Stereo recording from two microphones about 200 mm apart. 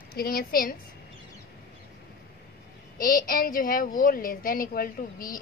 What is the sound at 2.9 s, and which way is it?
A woman's voice, 45° left (ahead or behind).